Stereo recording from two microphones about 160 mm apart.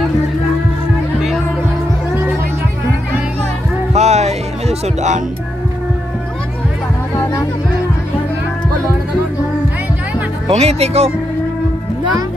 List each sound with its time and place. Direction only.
3.9 s music: 40° right (ahead or behind)
10.5 s speech: 40° right (ahead or behind)